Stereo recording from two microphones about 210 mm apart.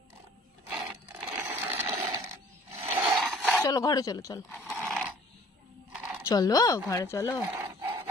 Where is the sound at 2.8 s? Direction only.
25° right (ahead or behind).